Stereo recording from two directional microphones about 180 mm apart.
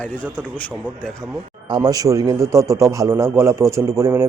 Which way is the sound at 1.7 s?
20° right (ahead or behind).